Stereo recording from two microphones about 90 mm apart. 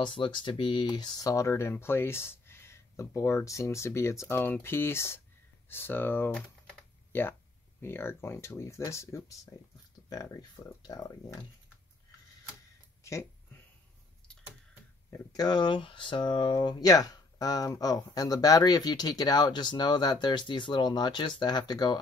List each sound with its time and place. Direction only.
0.0 s speech: 65° left (ahead or behind)
0.9 s speech: 40° left (ahead or behind)
13.0 s a sound: 30° left (ahead or behind)
15.3 s speech: 50° left (ahead or behind)